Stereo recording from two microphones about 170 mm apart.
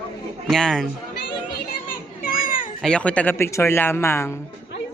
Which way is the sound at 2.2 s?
55° left (ahead or behind).